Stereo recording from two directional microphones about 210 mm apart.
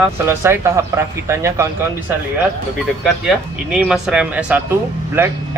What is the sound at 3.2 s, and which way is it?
Speech, 5° right (ahead or behind).